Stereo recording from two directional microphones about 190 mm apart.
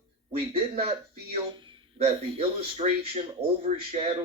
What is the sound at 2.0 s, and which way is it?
Speech, 35° right (ahead or behind).